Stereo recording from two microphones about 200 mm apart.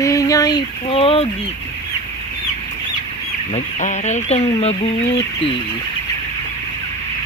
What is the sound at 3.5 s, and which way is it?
Speech, 35° left (ahead or behind).